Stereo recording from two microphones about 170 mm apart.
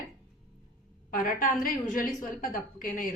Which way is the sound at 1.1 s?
55° left (ahead or behind).